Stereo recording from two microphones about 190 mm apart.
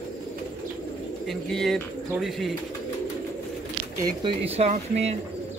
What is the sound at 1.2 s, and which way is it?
Speech, centre (ahead or behind).